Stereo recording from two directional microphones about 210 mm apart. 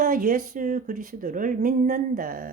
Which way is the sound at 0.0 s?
40° right (ahead or behind).